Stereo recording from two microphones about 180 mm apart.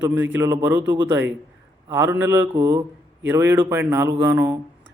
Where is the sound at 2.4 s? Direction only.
25° right (ahead or behind).